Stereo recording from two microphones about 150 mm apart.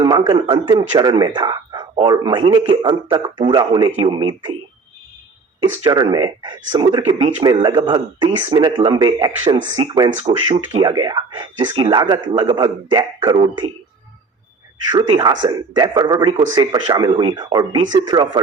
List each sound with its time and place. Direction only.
0.0 s speech: 30° right (ahead or behind)
5.8 s speech: 30° right (ahead or behind)
10.8 s speech: 30° right (ahead or behind)
14.9 s speech: 30° right (ahead or behind)